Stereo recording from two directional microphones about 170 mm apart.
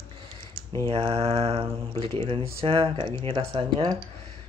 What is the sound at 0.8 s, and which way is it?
Speech, 30° right (ahead or behind).